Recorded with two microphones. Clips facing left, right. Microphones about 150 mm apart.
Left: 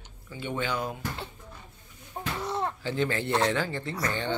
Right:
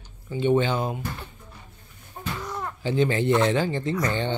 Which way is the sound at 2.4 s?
25° left (ahead or behind).